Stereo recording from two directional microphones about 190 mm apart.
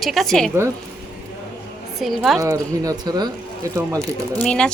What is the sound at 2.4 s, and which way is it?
Speech, 15° right (ahead or behind).